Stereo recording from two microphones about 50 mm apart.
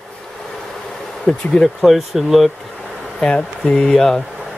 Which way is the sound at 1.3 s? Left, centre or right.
Left.